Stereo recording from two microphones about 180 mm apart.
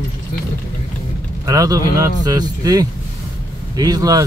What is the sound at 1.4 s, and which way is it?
Speech, 20° right (ahead or behind).